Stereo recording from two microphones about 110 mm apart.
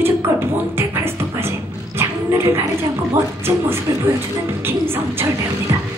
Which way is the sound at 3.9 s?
25° right (ahead or behind).